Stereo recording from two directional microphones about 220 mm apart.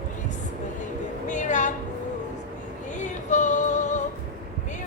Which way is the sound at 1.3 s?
35° left (ahead or behind).